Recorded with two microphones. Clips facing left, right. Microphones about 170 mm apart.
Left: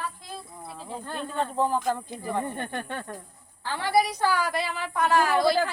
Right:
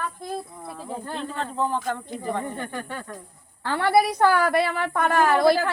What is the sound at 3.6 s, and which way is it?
A woman's voice, 60° right (ahead or behind).